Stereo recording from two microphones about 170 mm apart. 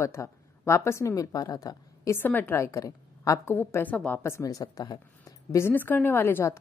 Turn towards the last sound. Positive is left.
turn(degrees=15)  # may be behind; listen again after turning